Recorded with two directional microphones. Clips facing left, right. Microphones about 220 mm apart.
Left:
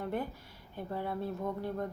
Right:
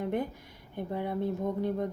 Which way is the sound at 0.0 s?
15° right (ahead or behind).